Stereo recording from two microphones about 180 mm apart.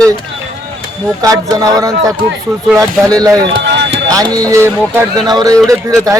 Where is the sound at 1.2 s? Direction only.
20° right (ahead or behind).